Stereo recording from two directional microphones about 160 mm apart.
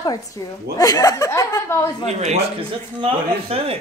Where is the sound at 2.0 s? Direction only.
45° right (ahead or behind).